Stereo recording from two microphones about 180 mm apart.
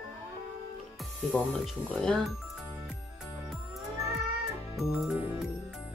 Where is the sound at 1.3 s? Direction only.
5° left (ahead or behind).